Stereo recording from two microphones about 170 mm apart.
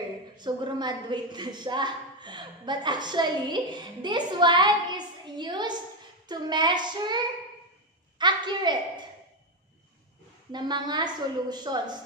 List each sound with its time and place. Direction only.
0.4 s a woman's voice: 25° right (ahead or behind)
8.2 s a woman's voice: 25° right (ahead or behind)
10.5 s a woman's voice: 25° right (ahead or behind)